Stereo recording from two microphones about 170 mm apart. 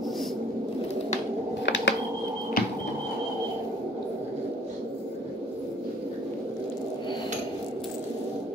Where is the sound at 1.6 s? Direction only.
90° left.